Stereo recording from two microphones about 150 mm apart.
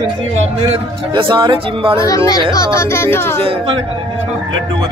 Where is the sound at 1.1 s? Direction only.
30° right (ahead or behind).